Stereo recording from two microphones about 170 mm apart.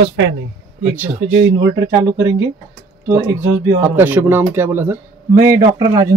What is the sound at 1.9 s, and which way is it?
Speech, 15° right (ahead or behind).